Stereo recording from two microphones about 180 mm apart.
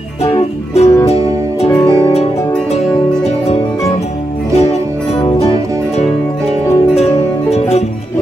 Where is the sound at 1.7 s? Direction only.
20° left (ahead or behind).